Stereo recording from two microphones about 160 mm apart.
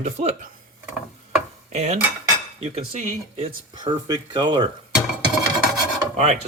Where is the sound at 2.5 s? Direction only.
40° right (ahead or behind).